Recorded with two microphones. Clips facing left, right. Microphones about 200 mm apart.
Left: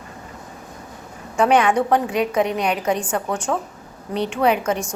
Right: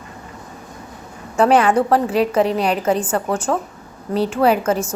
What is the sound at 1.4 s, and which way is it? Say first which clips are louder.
Speech: right 2 dB; 5° right (ahead or behind).